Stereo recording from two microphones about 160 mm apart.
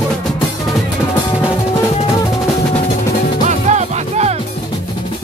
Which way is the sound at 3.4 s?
45° right (ahead or behind).